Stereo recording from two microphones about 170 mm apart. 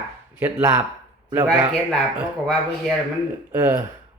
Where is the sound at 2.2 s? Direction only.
Centre (ahead or behind).